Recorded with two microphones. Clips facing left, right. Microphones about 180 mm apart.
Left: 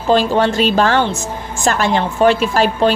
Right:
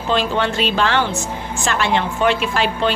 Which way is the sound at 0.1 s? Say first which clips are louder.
Left 6 dB; 40° left (ahead or behind).